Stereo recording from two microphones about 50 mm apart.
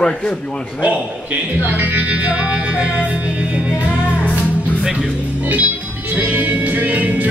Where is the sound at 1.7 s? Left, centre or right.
Right.